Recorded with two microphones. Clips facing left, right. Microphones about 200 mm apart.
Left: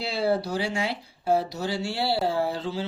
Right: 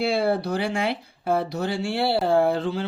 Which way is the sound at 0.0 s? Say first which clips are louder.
Right 3 dB; 55° right (ahead or behind).